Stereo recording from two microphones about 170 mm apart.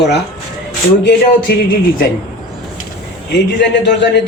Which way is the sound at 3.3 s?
90° left.